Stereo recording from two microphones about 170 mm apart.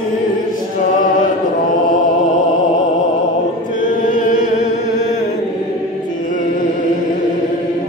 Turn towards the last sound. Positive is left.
turn(degrees=50)  # may be behind; listen again after turning